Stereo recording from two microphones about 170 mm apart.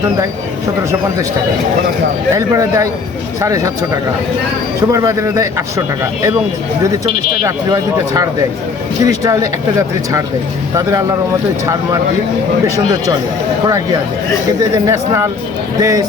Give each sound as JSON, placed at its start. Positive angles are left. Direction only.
{"t": 2.3, "sound": "a man's voice", "side_deg": -20}
{"t": 4.9, "sound": "a man's voice", "side_deg": -20}
{"t": 7.4, "sound": "speech", "side_deg": -20}
{"t": 12.7, "sound": "a man's voice", "side_deg": -20}